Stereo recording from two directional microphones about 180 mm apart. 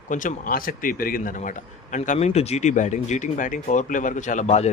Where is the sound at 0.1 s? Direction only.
45° left (ahead or behind).